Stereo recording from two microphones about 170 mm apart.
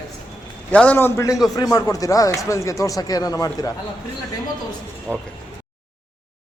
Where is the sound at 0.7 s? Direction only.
10° left (ahead or behind).